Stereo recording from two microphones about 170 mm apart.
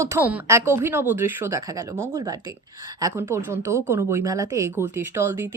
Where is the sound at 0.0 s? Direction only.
15° right (ahead or behind).